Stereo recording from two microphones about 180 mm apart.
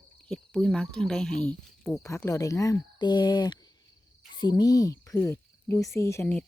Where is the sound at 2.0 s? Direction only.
15° left (ahead or behind).